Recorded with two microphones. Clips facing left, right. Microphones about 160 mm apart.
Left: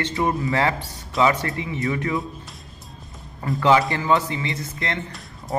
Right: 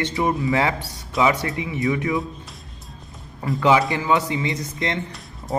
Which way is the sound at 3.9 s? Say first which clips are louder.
Even; 15° right (ahead or behind).